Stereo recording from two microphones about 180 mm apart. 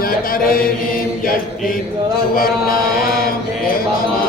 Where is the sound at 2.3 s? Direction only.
55° left (ahead or behind).